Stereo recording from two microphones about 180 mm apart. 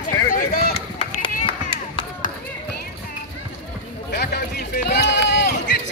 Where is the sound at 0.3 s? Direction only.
55° left (ahead or behind).